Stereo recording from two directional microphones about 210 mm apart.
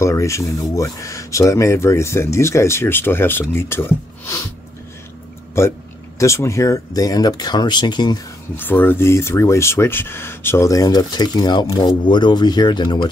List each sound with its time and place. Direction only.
0.0 s speech: 15° left (ahead or behind)
5.6 s speech: 10° left (ahead or behind)
8.5 s speech: 10° left (ahead or behind)